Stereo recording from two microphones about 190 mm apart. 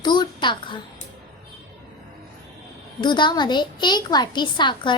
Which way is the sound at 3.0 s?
25° left (ahead or behind).